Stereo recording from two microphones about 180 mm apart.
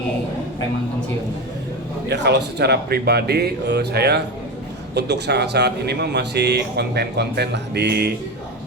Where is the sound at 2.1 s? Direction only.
70° right (ahead or behind).